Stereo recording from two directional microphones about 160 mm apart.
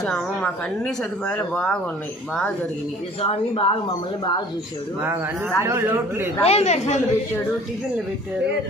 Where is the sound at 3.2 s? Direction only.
35° left (ahead or behind).